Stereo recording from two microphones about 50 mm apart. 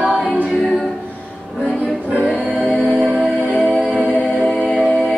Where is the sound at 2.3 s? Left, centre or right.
Centre.